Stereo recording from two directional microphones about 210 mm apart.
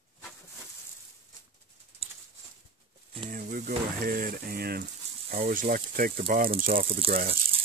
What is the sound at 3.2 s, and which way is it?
Speech, 40° right (ahead or behind).